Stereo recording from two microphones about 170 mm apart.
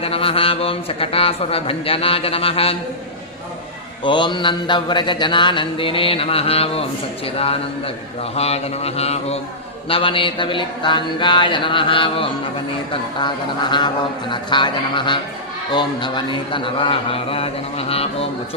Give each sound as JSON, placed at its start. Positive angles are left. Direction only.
{"t": 0.0, "sound": "a man's voice", "side_deg": 35}
{"t": 4.0, "sound": "mantra", "side_deg": 30}
{"t": 8.4, "sound": "a man's voice", "side_deg": 35}
{"t": 9.9, "sound": "mantra", "side_deg": 30}
{"t": 15.7, "sound": "a man's voice", "side_deg": 25}